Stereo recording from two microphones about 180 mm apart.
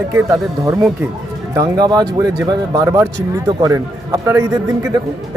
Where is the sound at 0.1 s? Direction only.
15° right (ahead or behind).